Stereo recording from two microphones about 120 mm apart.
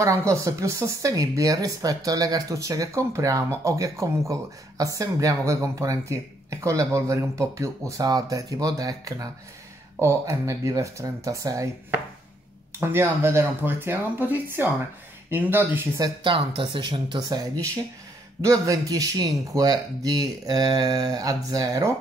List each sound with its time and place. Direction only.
0.0 s speech: 25° right (ahead or behind)
12.8 s speech: 20° right (ahead or behind)
16.3 s speech: 45° right (ahead or behind)
18.4 s speech: 30° right (ahead or behind)